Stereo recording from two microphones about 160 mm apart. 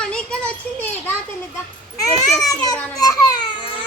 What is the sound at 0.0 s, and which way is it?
Children playing, 5° left (ahead or behind).